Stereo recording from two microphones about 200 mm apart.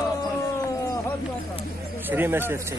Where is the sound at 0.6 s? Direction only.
15° left (ahead or behind).